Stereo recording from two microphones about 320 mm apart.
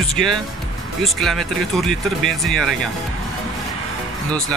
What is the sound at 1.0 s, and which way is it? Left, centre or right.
Speech, centre.